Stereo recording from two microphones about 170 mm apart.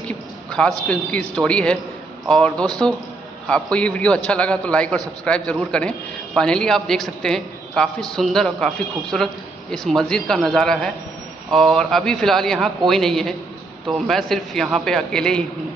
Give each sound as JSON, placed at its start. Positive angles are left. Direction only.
{"t": 0.1, "sound": "a man's voice", "side_deg": 5}
{"t": 3.7, "sound": "a man's voice", "side_deg": 5}